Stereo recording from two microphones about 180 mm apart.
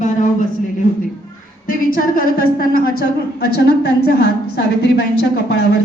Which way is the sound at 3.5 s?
60° left (ahead or behind).